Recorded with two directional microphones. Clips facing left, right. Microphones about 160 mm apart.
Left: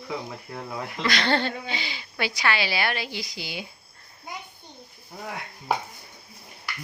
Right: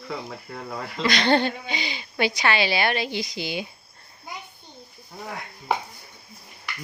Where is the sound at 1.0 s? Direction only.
20° right (ahead or behind).